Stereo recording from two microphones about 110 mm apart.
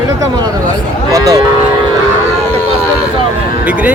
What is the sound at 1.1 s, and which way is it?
Speech, 30° right (ahead or behind).